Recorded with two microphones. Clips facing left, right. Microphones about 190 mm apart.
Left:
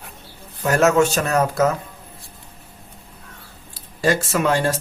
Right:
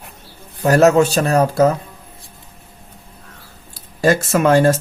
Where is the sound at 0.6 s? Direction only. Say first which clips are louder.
Right 4 dB; 35° right (ahead or behind).